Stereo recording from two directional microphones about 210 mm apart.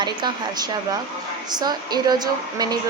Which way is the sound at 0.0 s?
20° right (ahead or behind).